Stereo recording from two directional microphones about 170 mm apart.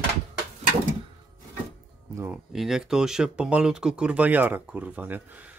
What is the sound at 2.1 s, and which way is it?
Speech, 15° right (ahead or behind).